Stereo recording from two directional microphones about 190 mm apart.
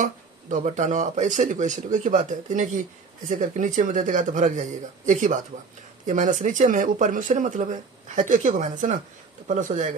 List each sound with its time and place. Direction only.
0.0 s speech: 40° right (ahead or behind)